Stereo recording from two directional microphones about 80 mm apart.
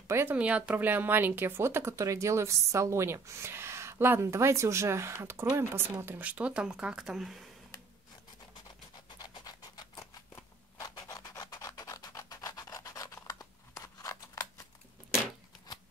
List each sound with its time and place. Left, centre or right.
0.1 s speech: right
0.4 s speech: centre
9.2 s a sound: left
11.0 s filing: left